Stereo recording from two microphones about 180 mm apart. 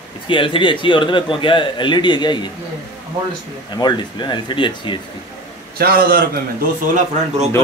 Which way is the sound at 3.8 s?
25° left (ahead or behind).